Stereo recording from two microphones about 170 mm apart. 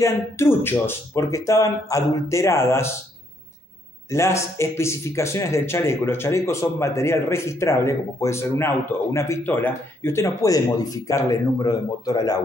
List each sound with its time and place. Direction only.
0.0 s speech: 15° left (ahead or behind)
4.1 s speech: 15° left (ahead or behind)